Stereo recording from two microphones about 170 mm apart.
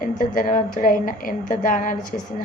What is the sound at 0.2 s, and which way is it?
A woman's voice, 50° left (ahead or behind).